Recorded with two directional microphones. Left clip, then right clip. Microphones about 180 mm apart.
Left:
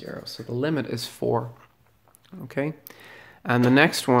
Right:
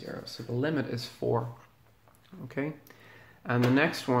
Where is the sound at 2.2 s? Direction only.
35° left (ahead or behind).